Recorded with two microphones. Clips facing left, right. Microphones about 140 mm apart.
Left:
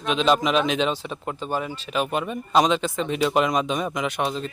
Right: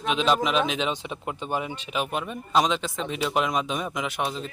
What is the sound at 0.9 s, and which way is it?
Speech, 15° right (ahead or behind).